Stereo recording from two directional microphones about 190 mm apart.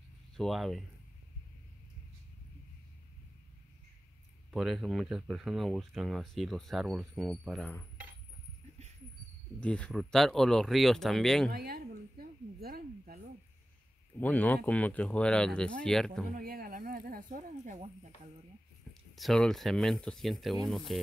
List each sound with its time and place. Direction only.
0.4 s speech: centre (ahead or behind)
4.5 s speech: centre (ahead or behind)
9.6 s speech: 5° left (ahead or behind)
11.5 s speech: 55° right (ahead or behind)
14.1 s speech: 10° left (ahead or behind)
16.3 s speech: 50° right (ahead or behind)
19.1 s speech: centre (ahead or behind)